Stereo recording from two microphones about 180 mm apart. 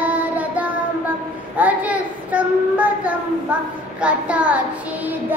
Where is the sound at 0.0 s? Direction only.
10° right (ahead or behind).